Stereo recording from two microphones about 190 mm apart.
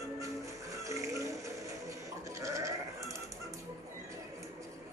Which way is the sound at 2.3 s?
15° right (ahead or behind).